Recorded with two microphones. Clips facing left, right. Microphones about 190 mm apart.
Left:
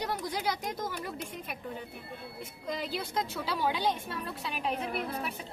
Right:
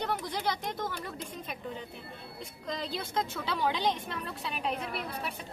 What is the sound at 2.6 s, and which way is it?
A woman's voice, 5° left (ahead or behind).